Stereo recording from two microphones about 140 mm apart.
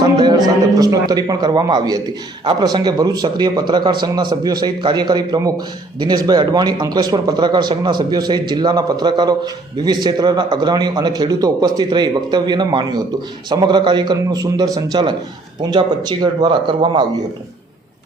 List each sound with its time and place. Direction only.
0.0 s a man's voice: 30° right (ahead or behind)